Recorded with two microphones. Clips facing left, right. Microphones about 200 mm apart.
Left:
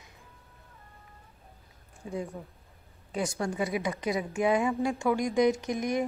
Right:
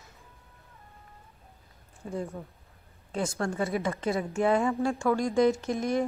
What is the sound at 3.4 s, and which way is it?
A woman's voice, 15° left (ahead or behind).